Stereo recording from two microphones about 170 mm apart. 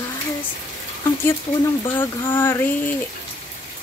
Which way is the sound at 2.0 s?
15° left (ahead or behind).